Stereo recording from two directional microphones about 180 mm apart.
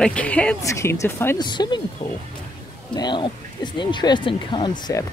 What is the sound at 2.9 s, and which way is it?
Speech, 25° left (ahead or behind).